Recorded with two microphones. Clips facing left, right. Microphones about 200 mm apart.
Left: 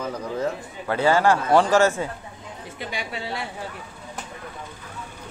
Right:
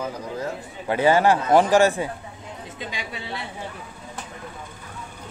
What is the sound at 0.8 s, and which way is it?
A man's voice, 15° right (ahead or behind).